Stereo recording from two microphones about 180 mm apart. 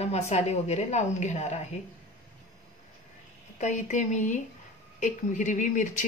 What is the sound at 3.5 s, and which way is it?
Speech, 40° left (ahead or behind).